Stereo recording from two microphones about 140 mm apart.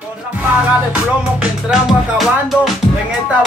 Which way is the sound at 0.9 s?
5° right (ahead or behind).